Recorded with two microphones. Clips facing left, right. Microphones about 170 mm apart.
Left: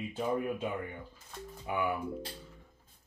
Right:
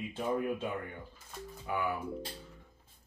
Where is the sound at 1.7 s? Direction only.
15° left (ahead or behind).